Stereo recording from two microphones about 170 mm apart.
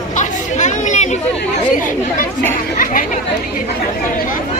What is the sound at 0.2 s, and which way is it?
Chatter, 45° left (ahead or behind).